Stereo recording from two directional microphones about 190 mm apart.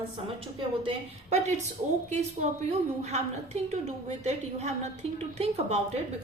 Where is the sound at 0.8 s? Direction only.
35° right (ahead or behind).